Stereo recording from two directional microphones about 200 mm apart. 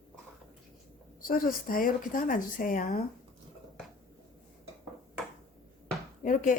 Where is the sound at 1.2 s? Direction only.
45° left (ahead or behind).